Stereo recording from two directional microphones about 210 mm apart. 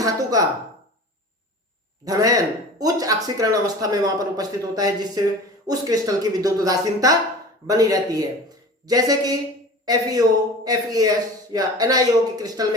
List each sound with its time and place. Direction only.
0.0 s speech: 15° right (ahead or behind)
2.0 s a man's voice: 15° right (ahead or behind)